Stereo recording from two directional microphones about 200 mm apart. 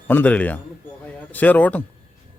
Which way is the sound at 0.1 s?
10° left (ahead or behind).